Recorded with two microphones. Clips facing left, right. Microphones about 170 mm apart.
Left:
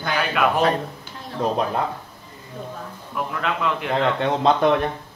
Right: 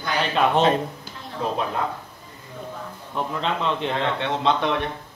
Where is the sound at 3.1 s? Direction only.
25° right (ahead or behind).